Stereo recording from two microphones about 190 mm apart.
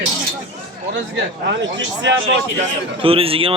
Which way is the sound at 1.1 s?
70° right (ahead or behind).